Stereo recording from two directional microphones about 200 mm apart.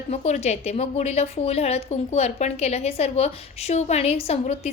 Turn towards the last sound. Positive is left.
turn(degrees=30)  # may be behind; listen again after turning